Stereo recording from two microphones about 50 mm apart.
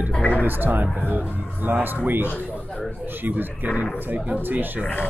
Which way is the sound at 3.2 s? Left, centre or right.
Right.